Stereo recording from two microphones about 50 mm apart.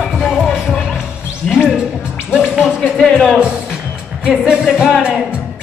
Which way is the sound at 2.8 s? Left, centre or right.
Centre.